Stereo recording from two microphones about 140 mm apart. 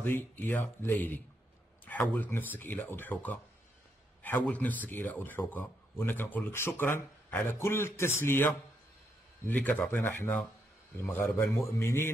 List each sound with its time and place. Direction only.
0.0 s a man's voice: 15° left (ahead or behind)